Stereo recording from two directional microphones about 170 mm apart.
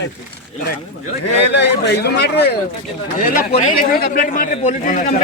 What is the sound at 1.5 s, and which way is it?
A man's voice, 80° left.